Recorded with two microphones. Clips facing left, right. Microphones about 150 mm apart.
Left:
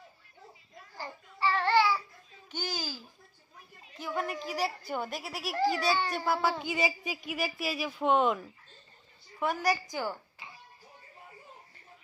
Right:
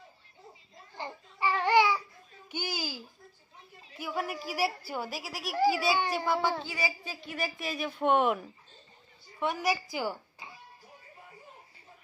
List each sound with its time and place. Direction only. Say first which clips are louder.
0.9 s babbling: right 2 dB; 20° right (ahead or behind)
2.5 s a sound: right 1 dB; 10° right (ahead or behind)
4.0 s speech: even; 5° right (ahead or behind)
6.6 s a woman's voice: left 4 dB; 20° left (ahead or behind)
7.2 s speech: left 1 dB; 5° left (ahead or behind)